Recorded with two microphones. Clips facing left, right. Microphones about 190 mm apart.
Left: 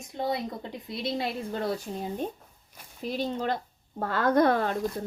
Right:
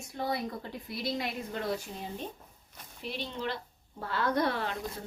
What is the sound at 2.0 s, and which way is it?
Speech, 45° left (ahead or behind).